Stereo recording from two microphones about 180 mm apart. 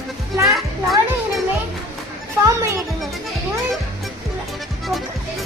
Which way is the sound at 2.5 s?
15° right (ahead or behind).